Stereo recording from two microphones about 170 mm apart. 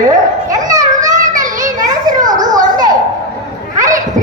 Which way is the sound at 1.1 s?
50° right (ahead or behind).